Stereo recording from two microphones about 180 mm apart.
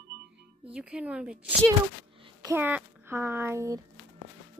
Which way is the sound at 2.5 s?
10° right (ahead or behind).